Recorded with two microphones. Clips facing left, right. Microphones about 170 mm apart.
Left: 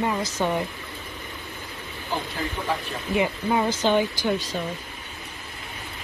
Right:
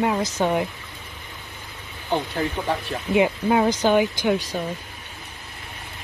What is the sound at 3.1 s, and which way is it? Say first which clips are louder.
Speech: right 4 dB; 15° right (ahead or behind).